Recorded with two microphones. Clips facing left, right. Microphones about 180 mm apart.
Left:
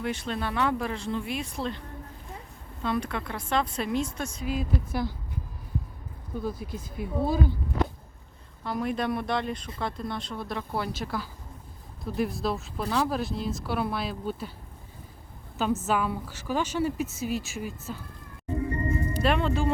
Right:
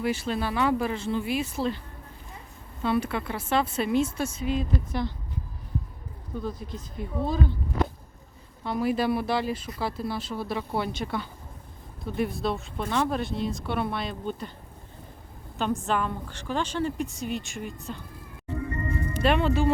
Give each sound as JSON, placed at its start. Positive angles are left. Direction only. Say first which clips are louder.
{"t": 0.0, "sound": "a woman's voice", "louder": "right 3 dB", "side_deg": -5}
{"t": 2.8, "sound": "a woman's voice", "louder": "right 3 dB", "side_deg": -5}
{"t": 6.4, "sound": "speech", "louder": "left 2 dB", "side_deg": 5}
{"t": 8.6, "sound": "a woman's voice", "louder": "right 3 dB", "side_deg": 0}
{"t": 15.9, "sound": "a woman's voice", "louder": "left 1 dB", "side_deg": 5}
{"t": 18.4, "sound": "music", "louder": "left 3 dB", "side_deg": 30}
{"t": 19.2, "sound": "a woman's voice", "louder": "right 3 dB", "side_deg": 0}